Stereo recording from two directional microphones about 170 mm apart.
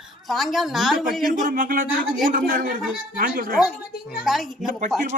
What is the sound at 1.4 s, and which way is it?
Speech, 55° right (ahead or behind).